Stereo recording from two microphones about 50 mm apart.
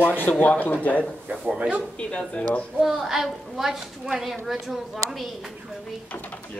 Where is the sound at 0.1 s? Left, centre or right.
Left.